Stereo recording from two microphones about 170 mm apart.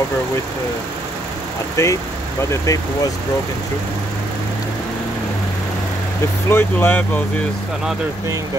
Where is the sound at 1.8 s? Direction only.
20° left (ahead or behind).